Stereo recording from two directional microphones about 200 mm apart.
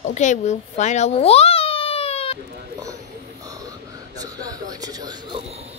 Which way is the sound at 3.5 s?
20° right (ahead or behind).